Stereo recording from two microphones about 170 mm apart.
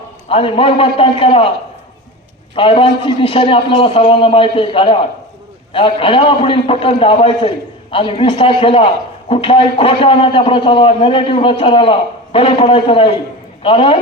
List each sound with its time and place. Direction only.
0.3 s a man's voice: 30° left (ahead or behind)
2.6 s a man's voice: 30° left (ahead or behind)